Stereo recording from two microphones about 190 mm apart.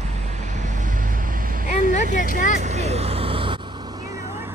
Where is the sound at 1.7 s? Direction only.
40° left (ahead or behind).